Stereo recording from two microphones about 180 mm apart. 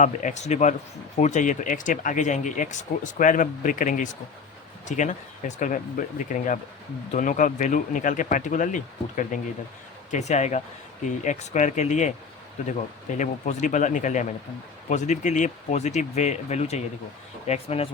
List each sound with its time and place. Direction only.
0.0 s speech: 45° left (ahead or behind)
13.1 s speech: 40° left (ahead or behind)